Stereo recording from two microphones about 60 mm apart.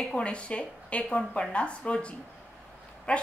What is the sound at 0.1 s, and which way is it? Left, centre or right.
A woman's voice, centre.